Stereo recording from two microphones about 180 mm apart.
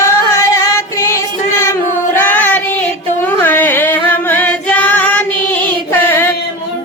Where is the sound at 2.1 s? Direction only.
10° left (ahead or behind).